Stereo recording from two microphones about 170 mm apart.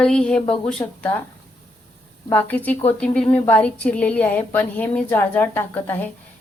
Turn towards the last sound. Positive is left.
turn(degrees=10)  # may be behind; listen again after turning